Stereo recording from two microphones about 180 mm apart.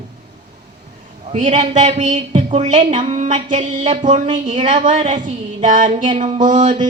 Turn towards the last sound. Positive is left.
turn(degrees=-45)  # may be behind; listen again after turning